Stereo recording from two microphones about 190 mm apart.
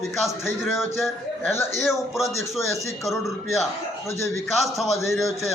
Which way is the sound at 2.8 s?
Centre (ahead or behind).